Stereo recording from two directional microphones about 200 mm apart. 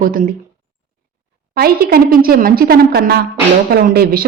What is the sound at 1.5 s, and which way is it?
A woman's voice, 50° right (ahead or behind).